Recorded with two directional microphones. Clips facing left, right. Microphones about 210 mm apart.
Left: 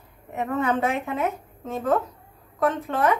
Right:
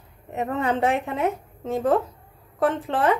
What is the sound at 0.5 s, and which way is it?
Speech, 30° right (ahead or behind).